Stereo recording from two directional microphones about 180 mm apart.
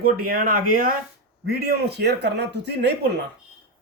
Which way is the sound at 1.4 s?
60° right (ahead or behind).